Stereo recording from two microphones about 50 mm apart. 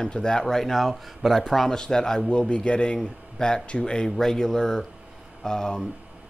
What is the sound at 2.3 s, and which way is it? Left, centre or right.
Speech, left.